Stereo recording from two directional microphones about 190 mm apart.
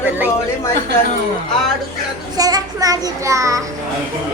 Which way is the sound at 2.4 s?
20° right (ahead or behind).